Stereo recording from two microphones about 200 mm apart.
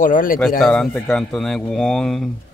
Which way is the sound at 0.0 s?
45° left (ahead or behind).